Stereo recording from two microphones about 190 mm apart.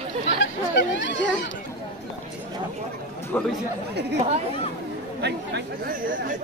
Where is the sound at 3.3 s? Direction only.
10° left (ahead or behind).